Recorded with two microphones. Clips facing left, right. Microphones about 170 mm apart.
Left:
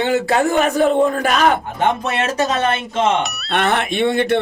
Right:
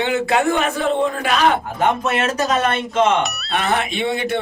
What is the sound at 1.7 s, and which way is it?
Speech, 25° left (ahead or behind).